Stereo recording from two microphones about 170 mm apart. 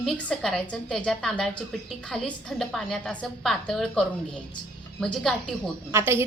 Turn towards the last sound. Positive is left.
turn(degrees=-15)  # may be behind; listen again after turning